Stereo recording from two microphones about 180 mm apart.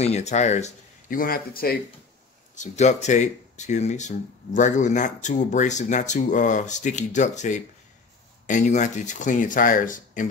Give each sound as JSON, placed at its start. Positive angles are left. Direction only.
{"t": 0.0, "sound": "speech", "side_deg": 40}
{"t": 2.5, "sound": "speech", "side_deg": 40}